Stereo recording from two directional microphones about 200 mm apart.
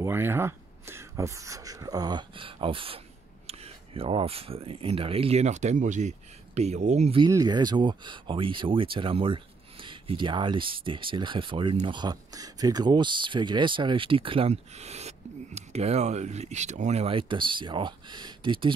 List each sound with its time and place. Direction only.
0.0 s speech: 10° right (ahead or behind); by 7.2 s 30° right (ahead or behind)
7.2 s speech: 20° right (ahead or behind)